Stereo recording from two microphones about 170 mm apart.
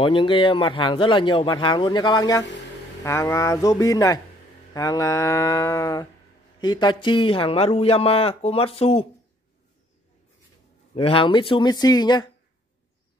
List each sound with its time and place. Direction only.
0.0 s a man's voice: 30° left (ahead or behind)
11.0 s speech: 30° left (ahead or behind)